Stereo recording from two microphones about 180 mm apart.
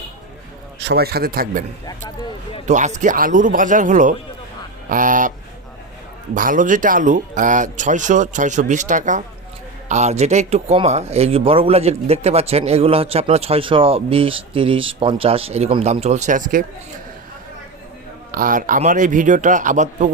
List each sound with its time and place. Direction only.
0.8 s a man's voice: 65° right (ahead or behind)
1.9 s speech: 25° left (ahead or behind)
2.6 s speech: 40° right (ahead or behind)
6.3 s speech: 50° right (ahead or behind)
18.3 s speech: 50° right (ahead or behind)